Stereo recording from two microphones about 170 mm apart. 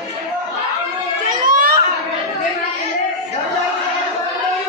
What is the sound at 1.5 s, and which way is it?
Chatter, 60° right (ahead or behind).